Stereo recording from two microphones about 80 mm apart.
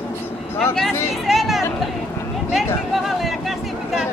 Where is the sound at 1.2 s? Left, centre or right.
Centre.